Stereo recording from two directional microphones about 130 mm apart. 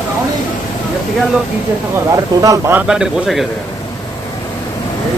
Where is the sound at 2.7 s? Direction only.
5° right (ahead or behind).